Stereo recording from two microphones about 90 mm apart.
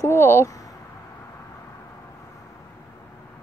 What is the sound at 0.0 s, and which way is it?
Speech, 30° left (ahead or behind).